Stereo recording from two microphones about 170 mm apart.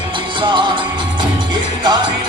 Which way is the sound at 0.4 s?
30° right (ahead or behind).